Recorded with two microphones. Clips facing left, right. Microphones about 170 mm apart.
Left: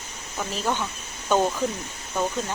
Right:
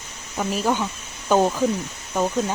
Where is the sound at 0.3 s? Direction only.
10° right (ahead or behind).